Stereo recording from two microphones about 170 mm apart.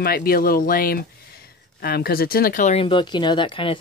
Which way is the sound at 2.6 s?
35° left (ahead or behind).